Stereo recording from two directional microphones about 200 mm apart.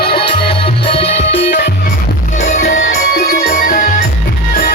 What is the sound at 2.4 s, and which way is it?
Music, 35° left (ahead or behind).